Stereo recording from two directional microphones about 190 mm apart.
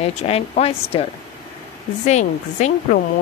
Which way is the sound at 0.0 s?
30° left (ahead or behind).